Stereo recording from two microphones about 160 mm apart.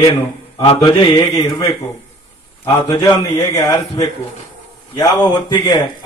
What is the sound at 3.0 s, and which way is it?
Speech, 20° left (ahead or behind).